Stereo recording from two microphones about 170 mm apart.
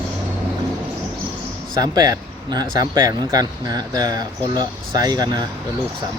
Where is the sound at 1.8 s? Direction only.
20° right (ahead or behind).